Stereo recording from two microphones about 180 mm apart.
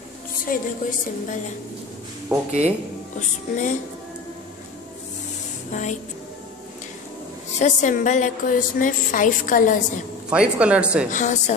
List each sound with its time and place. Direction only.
0.5 s speech: 45° left (ahead or behind)
2.2 s speech: 10° right (ahead or behind)
3.2 s speech: 45° left (ahead or behind)
5.7 s music: 45° left (ahead or behind)
7.5 s speech: 45° left (ahead or behind)
10.3 s speech: 5° right (ahead or behind)
11.1 s speech: 45° left (ahead or behind)